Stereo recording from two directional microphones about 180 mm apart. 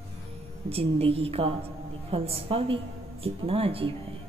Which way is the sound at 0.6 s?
30° right (ahead or behind).